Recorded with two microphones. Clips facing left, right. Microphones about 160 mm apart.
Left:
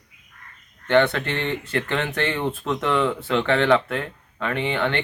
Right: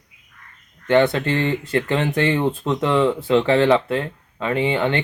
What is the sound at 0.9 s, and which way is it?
Speech, 35° right (ahead or behind).